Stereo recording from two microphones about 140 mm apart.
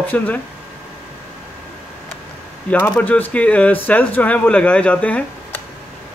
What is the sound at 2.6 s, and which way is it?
Speech, 10° left (ahead or behind).